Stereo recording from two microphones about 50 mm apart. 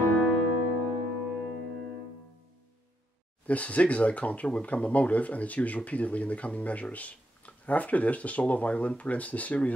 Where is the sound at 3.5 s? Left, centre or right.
Left.